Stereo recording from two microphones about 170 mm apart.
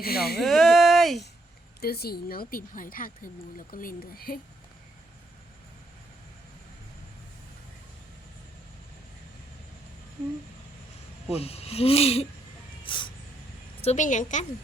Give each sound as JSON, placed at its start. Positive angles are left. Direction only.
{"t": 0.0, "sound": "speech", "side_deg": 65}
{"t": 0.4, "sound": "a sound", "side_deg": 0}
{"t": 1.8, "sound": "speech", "side_deg": 65}
{"t": 11.3, "sound": "speech", "side_deg": 35}
{"t": 12.8, "sound": "a sound", "side_deg": 30}
{"t": 13.8, "sound": "a woman's voice", "side_deg": 45}